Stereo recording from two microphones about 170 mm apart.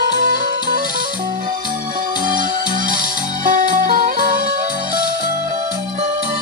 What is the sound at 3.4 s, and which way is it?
Music, 50° right (ahead or behind).